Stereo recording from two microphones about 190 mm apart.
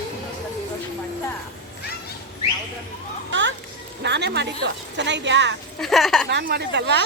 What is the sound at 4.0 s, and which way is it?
A woman's voice, 60° right (ahead or behind).